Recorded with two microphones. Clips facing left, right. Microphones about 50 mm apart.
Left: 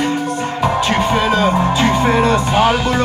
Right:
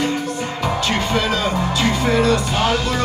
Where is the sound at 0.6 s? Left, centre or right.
Centre.